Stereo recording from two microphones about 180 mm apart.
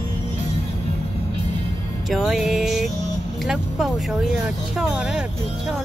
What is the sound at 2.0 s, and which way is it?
Music, centre (ahead or behind).